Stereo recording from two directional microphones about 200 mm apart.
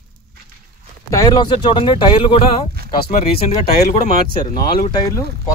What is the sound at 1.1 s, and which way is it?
Speech, 20° left (ahead or behind).